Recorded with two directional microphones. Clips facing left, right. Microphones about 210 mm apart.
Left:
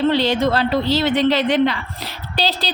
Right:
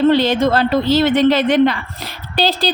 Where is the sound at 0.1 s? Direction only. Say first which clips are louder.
Right 3 dB; 50° right (ahead or behind).